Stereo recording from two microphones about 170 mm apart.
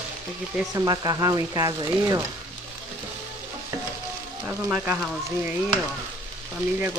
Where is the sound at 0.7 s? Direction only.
20° right (ahead or behind).